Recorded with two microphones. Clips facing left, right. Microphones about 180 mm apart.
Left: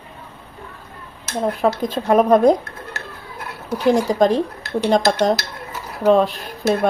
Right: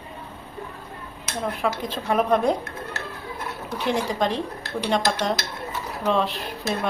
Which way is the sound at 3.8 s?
40° left (ahead or behind).